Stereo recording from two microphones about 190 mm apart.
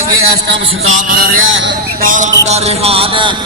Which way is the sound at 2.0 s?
45° right (ahead or behind).